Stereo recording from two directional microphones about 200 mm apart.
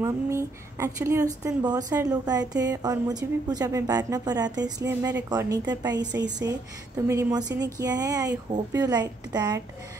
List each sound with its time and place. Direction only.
0.0 s a woman's voice: 15° right (ahead or behind)
6.1 s speech: 60° right (ahead or behind)
7.1 s a woman's voice: 15° right (ahead or behind)